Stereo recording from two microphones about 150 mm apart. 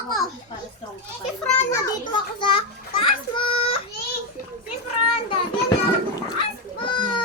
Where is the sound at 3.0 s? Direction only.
35° left (ahead or behind).